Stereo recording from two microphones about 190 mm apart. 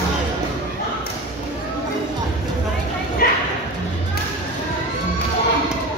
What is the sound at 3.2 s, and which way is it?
Bow-wow, 50° left (ahead or behind).